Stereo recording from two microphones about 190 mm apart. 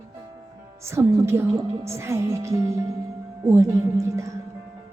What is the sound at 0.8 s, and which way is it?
Speech, 15° right (ahead or behind).